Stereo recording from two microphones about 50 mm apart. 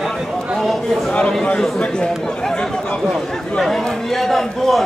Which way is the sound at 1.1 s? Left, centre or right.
Left.